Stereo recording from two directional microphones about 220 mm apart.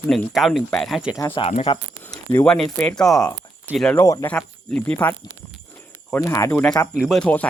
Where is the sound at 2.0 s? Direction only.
10° left (ahead or behind).